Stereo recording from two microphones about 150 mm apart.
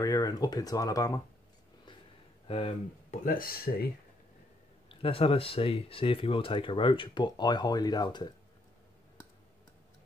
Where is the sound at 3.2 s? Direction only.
70° left (ahead or behind).